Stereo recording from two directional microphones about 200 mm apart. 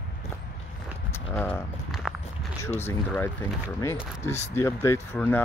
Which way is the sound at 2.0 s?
5° right (ahead or behind).